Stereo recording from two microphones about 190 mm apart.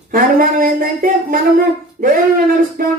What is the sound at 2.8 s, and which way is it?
Speech, 45° right (ahead or behind).